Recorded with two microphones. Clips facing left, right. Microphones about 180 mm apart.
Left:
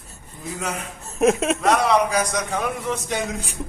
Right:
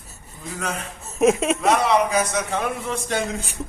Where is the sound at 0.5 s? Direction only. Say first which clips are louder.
Even; 15° left (ahead or behind).